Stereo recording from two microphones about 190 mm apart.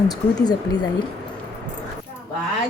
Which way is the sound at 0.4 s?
20° left (ahead or behind).